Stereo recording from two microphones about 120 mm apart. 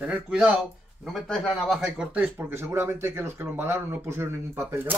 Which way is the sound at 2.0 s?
10° right (ahead or behind).